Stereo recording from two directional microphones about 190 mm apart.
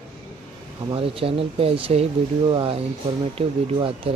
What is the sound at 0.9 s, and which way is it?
Speech, 30° right (ahead or behind).